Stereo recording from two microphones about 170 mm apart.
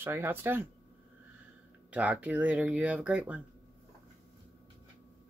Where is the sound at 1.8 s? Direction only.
5° right (ahead or behind).